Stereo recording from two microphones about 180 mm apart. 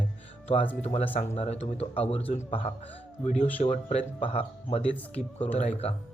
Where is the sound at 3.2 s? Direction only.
40° left (ahead or behind).